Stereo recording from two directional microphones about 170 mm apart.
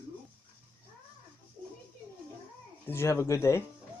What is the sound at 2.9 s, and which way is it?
Speech, 15° left (ahead or behind).